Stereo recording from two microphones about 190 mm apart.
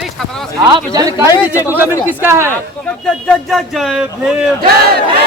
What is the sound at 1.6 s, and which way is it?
Speech, 10° right (ahead or behind).